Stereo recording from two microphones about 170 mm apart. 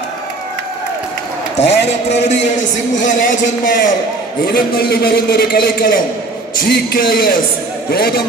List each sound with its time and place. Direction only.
1.6 s a man's voice: 40° left (ahead or behind)
4.5 s a man's voice: 65° left (ahead or behind)